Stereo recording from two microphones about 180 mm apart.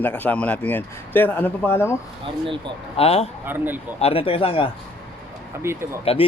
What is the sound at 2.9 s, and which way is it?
Speech, 35° left (ahead or behind).